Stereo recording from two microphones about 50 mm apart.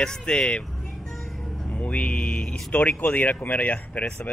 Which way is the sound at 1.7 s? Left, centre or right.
Left.